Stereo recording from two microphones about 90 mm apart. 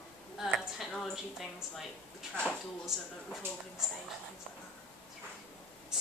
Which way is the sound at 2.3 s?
15° left (ahead or behind).